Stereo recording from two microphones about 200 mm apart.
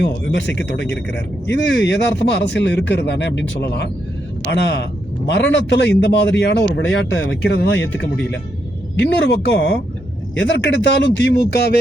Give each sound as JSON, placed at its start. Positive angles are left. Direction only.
{"t": 0.0, "sound": "speech", "side_deg": 60}